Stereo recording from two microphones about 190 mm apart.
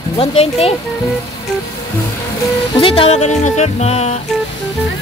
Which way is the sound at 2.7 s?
30° left (ahead or behind).